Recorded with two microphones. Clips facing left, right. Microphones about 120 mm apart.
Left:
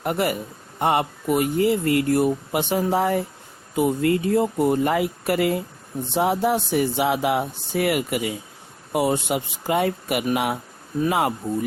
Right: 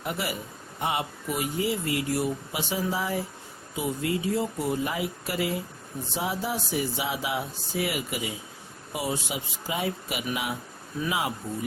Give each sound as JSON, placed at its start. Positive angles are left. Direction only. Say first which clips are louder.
{"t": 0.0, "sound": "speech", "louder": "left 8 dB", "side_deg": 55}